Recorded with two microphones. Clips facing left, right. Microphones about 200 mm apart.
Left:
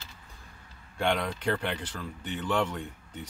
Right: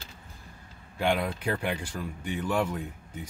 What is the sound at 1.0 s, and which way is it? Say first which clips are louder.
Speech: right 1 dB; 5° right (ahead or behind).